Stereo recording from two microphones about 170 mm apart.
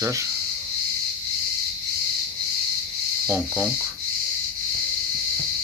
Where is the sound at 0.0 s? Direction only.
20° right (ahead or behind).